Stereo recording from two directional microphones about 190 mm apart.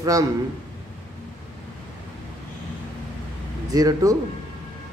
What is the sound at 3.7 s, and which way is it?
Speech, 20° right (ahead or behind).